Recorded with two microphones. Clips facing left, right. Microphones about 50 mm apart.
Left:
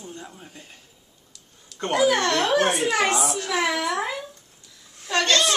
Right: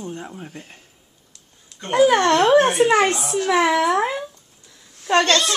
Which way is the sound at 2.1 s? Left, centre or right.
Right.